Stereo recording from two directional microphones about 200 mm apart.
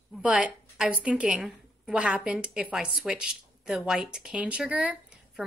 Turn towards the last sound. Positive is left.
turn(degrees=-5)  # may be behind; listen again after turning